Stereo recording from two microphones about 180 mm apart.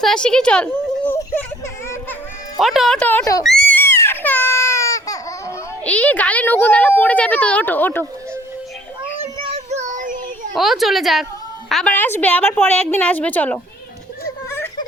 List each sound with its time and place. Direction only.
0.0 s speech: 5° left (ahead or behind)
2.6 s a woman's voice: centre (ahead or behind)
3.4 s baby cry: 5° left (ahead or behind)
5.8 s speech: 5° left (ahead or behind)
9.5 s child singing: 40° right (ahead or behind)
10.5 s a woman's voice: centre (ahead or behind)